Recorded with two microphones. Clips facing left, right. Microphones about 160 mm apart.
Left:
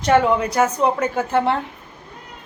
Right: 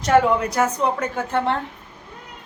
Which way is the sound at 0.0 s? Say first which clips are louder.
Left 1 dB; centre (ahead or behind).